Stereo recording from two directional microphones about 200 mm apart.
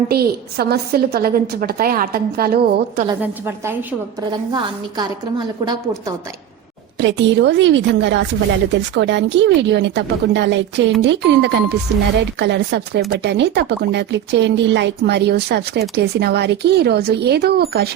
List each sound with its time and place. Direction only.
0.1 s a woman's voice: 50° right (ahead or behind)
3.2 s a woman's voice: 10° right (ahead or behind)
4.3 s a woman's voice: 20° right (ahead or behind)
7.0 s speech: 65° right (ahead or behind)